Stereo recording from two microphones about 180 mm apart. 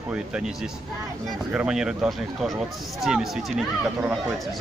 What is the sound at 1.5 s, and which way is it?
Speech, 5° right (ahead or behind).